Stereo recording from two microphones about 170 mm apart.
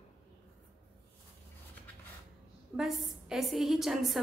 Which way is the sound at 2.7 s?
5° right (ahead or behind).